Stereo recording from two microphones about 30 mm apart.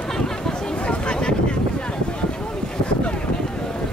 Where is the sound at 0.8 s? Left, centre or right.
Left.